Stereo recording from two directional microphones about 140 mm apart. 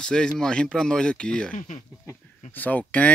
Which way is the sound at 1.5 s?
65° left (ahead or behind).